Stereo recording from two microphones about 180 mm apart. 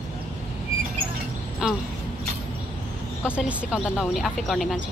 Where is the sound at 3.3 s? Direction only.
5° right (ahead or behind).